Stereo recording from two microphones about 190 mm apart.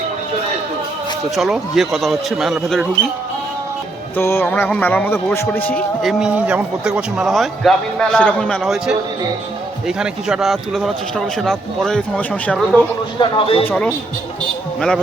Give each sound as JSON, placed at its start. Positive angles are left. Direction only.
{"t": 1.4, "sound": "speech", "side_deg": 0}
{"t": 4.2, "sound": "speech", "side_deg": 10}
{"t": 13.1, "sound": "speech", "side_deg": 30}
{"t": 13.7, "sound": "speech", "side_deg": 5}